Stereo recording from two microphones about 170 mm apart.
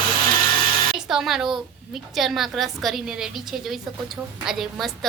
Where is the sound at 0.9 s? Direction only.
5° right (ahead or behind).